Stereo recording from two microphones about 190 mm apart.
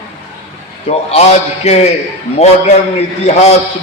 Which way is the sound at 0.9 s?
35° left (ahead or behind).